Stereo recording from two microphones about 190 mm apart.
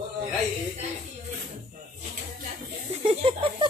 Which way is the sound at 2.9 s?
30° right (ahead or behind).